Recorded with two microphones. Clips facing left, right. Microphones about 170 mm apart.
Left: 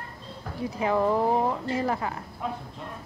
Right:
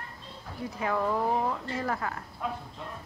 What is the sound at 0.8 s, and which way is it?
Speech, 25° left (ahead or behind).